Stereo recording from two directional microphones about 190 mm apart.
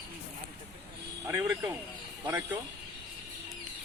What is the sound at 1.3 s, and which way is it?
A man's voice, 15° right (ahead or behind).